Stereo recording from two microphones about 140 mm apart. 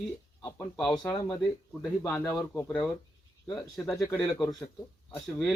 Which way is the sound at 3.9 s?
20° left (ahead or behind).